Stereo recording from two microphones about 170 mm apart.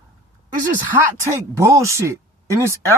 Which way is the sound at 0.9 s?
15° right (ahead or behind).